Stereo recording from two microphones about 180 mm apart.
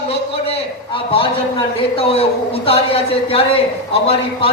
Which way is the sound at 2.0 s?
30° left (ahead or behind).